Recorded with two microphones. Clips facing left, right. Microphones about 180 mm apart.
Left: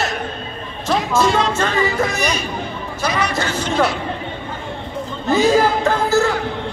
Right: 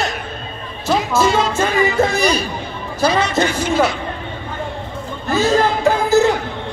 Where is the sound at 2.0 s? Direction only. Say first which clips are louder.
Right 4 dB; 30° right (ahead or behind).